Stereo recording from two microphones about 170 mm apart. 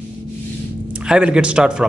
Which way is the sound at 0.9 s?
5° right (ahead or behind).